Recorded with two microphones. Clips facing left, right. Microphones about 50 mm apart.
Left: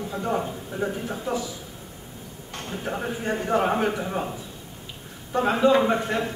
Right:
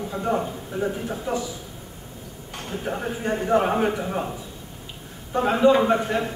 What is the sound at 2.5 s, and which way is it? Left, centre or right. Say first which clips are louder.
A man's voice: right 1 dB; centre.